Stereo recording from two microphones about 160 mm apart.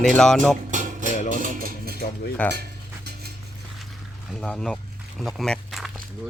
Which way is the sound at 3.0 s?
80° right.